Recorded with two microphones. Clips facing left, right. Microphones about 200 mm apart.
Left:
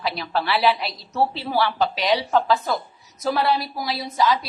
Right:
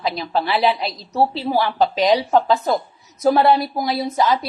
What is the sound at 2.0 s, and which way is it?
Speech, 40° right (ahead or behind).